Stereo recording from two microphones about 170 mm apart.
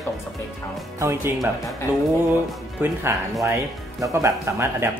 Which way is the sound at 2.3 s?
10° right (ahead or behind).